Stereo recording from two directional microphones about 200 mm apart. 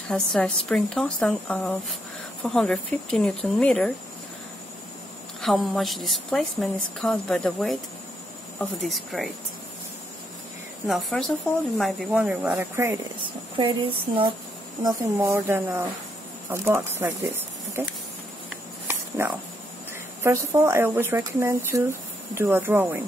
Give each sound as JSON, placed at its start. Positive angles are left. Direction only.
{"t": 0.1, "sound": "a woman's voice", "side_deg": 0}
{"t": 5.4, "sound": "a woman's voice", "side_deg": 0}
{"t": 10.9, "sound": "a woman's voice", "side_deg": 0}
{"t": 13.6, "sound": "speech", "side_deg": -25}
{"t": 19.2, "sound": "speech", "side_deg": -10}